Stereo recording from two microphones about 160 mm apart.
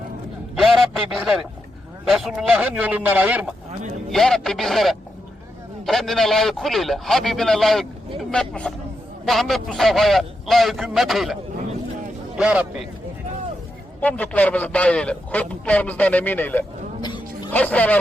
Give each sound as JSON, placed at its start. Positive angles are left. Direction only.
{"t": 0.6, "sound": "radio", "side_deg": 0}
{"t": 2.0, "sound": "speech", "side_deg": 0}
{"t": 3.7, "sound": "a sound", "side_deg": -45}
{"t": 4.1, "sound": "a man's voice", "side_deg": 0}
{"t": 12.4, "sound": "a man's voice", "side_deg": -5}
{"t": 14.0, "sound": "a man's voice", "side_deg": 10}
{"t": 17.0, "sound": "a sound", "side_deg": 25}
{"t": 17.5, "sound": "a man's voice", "side_deg": 10}